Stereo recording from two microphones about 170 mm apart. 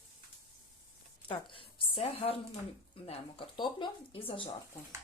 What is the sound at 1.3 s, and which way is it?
Speech, 30° left (ahead or behind).